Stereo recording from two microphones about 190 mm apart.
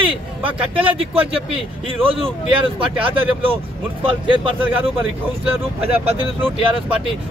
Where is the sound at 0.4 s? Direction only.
30° right (ahead or behind).